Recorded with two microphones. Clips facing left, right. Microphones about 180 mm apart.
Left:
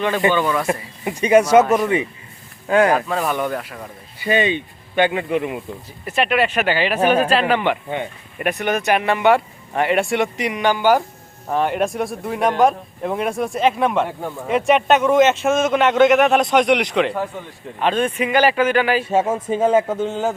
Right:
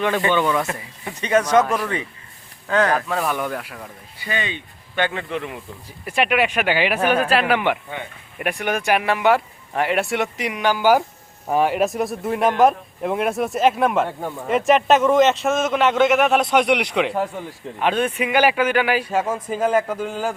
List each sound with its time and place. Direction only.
0.7 s speech: 15° left (ahead or behind)
1.7 s speech: 20° left (ahead or behind)
3.1 s speech: centre (ahead or behind)
4.2 s speech: 20° left (ahead or behind)
6.1 s speech: 10° right (ahead or behind)
19.0 s speech: 25° left (ahead or behind)